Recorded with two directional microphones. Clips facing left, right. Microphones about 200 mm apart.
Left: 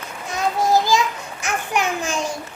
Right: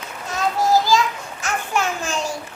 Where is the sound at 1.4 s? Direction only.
15° left (ahead or behind).